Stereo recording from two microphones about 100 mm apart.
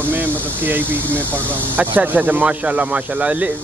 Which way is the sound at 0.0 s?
20° right (ahead or behind).